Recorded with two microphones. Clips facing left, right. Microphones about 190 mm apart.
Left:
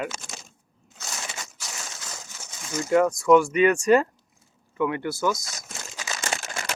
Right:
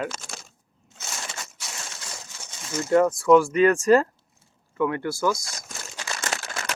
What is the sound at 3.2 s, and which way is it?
Speech, centre (ahead or behind).